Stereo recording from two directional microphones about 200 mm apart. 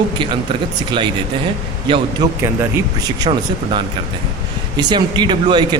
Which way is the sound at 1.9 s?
25° right (ahead or behind).